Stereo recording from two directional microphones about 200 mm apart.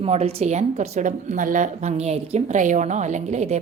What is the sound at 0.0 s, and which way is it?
A woman's voice, 30° right (ahead or behind).